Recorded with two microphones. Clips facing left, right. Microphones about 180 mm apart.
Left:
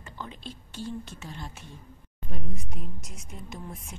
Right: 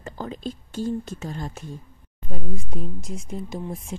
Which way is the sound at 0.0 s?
40° right (ahead or behind).